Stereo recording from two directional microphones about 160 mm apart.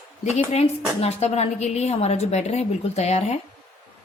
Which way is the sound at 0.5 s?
40° left (ahead or behind).